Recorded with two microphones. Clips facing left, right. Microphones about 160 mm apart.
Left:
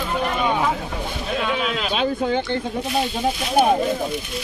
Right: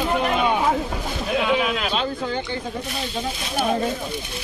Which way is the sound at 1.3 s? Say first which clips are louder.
Right 3 dB; 10° right (ahead or behind).